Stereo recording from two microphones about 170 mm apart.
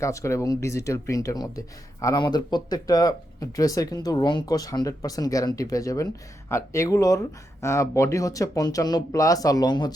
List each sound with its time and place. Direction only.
0.0 s speech: 15° left (ahead or behind)